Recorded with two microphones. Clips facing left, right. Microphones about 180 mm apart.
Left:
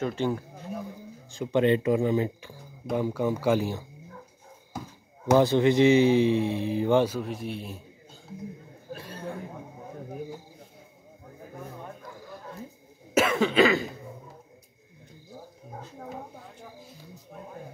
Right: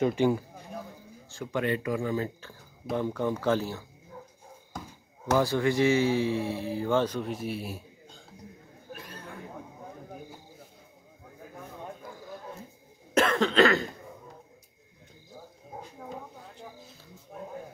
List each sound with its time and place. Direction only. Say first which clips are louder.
0.0 s speech: right 3 dB; 15° right (ahead or behind)
1.3 s speech: left 7 dB; 20° left (ahead or behind)
3.0 s speech: left 2 dB; 10° left (ahead or behind)
5.3 s speech: left 5 dB; 20° left (ahead or behind)
7.2 s speech: even; centre (ahead or behind)
8.9 s a sound: left 4 dB; 30° left (ahead or behind)
13.1 s cough: left 1 dB; 10° left (ahead or behind)